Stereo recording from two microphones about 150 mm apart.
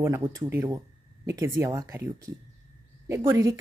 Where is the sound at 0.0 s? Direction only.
15° right (ahead or behind).